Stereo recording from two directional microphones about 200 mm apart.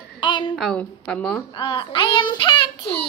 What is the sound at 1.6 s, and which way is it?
Child singing, 25° left (ahead or behind).